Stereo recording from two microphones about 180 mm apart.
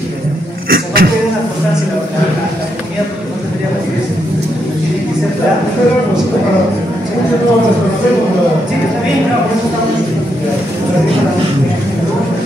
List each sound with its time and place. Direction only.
0.7 s speech: 55° right (ahead or behind)